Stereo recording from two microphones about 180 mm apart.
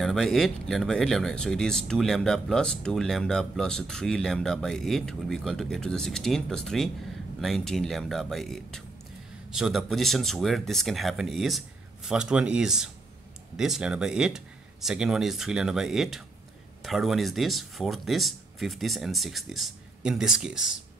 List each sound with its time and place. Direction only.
0.0 s speech: centre (ahead or behind)